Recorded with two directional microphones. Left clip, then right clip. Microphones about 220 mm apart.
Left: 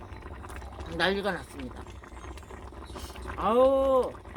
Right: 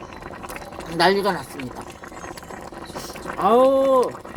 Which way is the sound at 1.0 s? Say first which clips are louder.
Right 9 dB; 20° left (ahead or behind).